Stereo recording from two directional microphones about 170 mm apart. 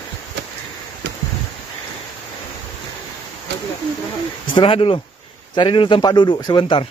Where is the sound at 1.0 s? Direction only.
90° right.